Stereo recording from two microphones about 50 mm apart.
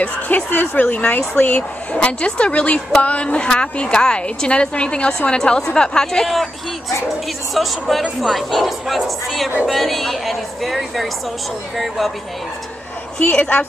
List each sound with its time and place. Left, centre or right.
0.5 s speech: left
0.8 s speech: left
6.2 s a woman's voice: centre
7.6 s a woman's voice: centre
13.2 s speech: left